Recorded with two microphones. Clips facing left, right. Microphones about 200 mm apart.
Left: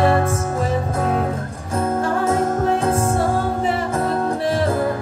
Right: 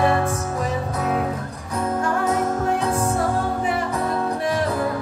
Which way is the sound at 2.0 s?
25° left (ahead or behind).